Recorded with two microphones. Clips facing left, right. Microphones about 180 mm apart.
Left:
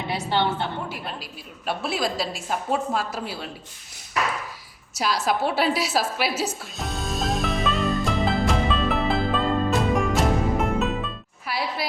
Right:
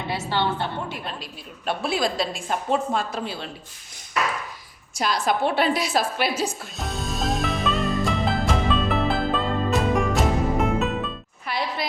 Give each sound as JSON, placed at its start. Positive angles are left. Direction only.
{"t": 0.1, "sound": "a woman's voice", "side_deg": 15}
{"t": 0.9, "sound": "a woman's voice", "side_deg": 5}
{"t": 4.9, "sound": "a sound", "side_deg": 5}